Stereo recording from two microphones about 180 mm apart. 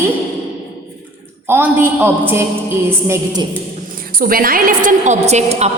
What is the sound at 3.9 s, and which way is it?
A woman's voice, 55° right (ahead or behind).